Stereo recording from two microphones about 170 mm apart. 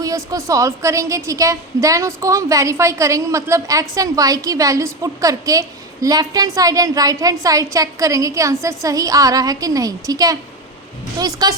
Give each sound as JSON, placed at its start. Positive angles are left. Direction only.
{"t": 0.3, "sound": "a woman's voice", "side_deg": -20}